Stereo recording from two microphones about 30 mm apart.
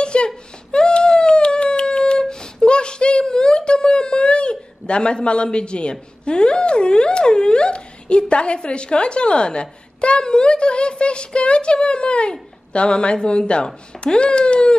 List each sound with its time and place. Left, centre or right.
0.0 s whimper: left
0.7 s a sound: left
8.6 s a child's voice: left